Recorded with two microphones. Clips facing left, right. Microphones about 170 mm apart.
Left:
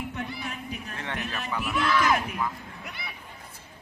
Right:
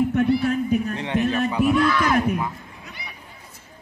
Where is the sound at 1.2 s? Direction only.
45° right (ahead or behind).